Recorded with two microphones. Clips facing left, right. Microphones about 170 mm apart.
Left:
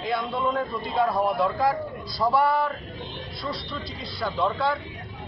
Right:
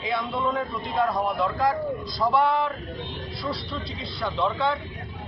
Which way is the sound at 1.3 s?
15° left (ahead or behind).